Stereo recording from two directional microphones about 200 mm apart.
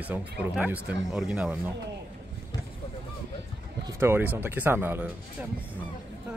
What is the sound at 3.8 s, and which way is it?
Run, 10° right (ahead or behind).